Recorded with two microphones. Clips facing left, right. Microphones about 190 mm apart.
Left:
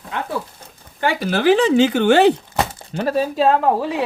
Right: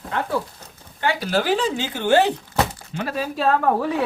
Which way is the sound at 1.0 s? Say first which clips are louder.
Left 4 dB; 50° left (ahead or behind).